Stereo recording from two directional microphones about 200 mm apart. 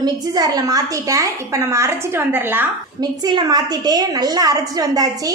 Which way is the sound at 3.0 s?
20° right (ahead or behind).